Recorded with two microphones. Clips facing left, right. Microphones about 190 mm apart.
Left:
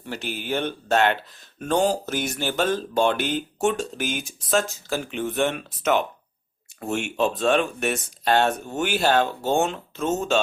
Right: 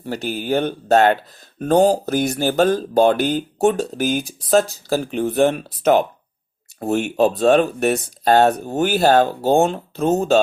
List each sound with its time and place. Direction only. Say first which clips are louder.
0.0 s speech: right 7 dB; 40° right (ahead or behind)